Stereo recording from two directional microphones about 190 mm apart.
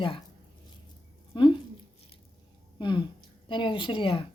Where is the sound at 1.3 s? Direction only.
25° left (ahead or behind).